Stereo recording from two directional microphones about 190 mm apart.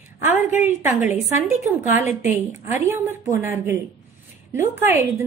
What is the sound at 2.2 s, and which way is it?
A woman's voice, 15° right (ahead or behind).